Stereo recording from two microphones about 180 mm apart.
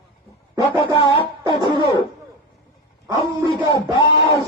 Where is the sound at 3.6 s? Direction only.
25° left (ahead or behind).